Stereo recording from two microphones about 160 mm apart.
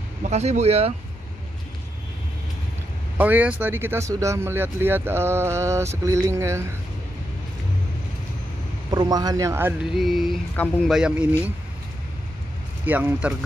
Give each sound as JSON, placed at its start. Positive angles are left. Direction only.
{"t": 0.2, "sound": "speech", "side_deg": -45}
{"t": 3.2, "sound": "speech", "side_deg": -10}
{"t": 8.9, "sound": "speech", "side_deg": -25}
{"t": 9.9, "sound": "a sound", "side_deg": 0}
{"t": 10.5, "sound": "speech", "side_deg": 10}
{"t": 10.9, "sound": "speech", "side_deg": -5}
{"t": 12.8, "sound": "speech", "side_deg": -10}